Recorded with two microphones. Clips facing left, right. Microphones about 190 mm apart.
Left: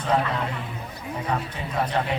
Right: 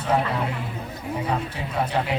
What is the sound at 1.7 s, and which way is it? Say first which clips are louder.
Speech: even; 10° right (ahead or behind).